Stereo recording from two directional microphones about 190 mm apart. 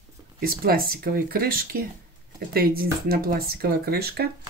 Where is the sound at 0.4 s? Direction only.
50° right (ahead or behind).